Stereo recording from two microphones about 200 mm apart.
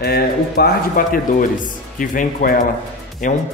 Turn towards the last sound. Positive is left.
turn(degrees=40)  # may be behind; listen again after turning